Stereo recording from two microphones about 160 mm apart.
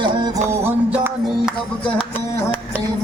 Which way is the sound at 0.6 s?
10° right (ahead or behind).